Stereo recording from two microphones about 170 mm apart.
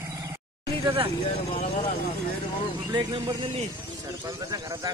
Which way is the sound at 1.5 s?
40° left (ahead or behind).